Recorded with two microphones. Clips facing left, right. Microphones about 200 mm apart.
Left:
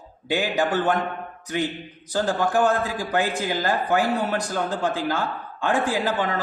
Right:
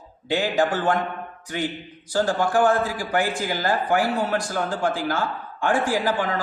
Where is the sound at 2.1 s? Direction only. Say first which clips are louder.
Right 1 dB; 20° left (ahead or behind).